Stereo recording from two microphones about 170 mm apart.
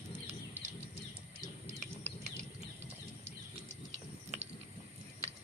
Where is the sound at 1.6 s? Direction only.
40° right (ahead or behind).